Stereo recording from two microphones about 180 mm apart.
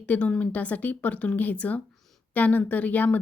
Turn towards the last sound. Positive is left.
turn(degrees=10)  # may be behind; listen again after turning